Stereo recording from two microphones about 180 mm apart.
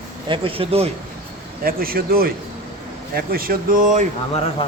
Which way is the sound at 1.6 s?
55° right (ahead or behind).